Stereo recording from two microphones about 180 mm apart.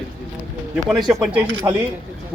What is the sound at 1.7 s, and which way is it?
Speech, 25° right (ahead or behind).